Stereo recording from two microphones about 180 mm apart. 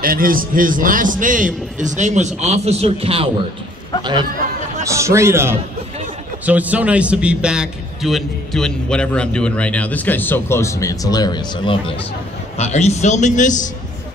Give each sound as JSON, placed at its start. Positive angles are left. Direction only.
{"t": 0.0, "sound": "a man's voice", "side_deg": -50}
{"t": 12.5, "sound": "a man's voice", "side_deg": 35}